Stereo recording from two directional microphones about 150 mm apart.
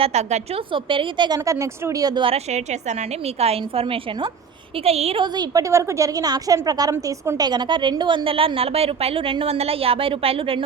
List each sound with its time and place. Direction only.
0.0 s a woman's voice: 45° right (ahead or behind)
0.7 s a woman's voice: 35° right (ahead or behind)